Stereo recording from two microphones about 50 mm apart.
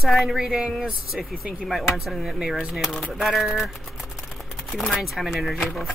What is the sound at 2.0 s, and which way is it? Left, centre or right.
Music, centre.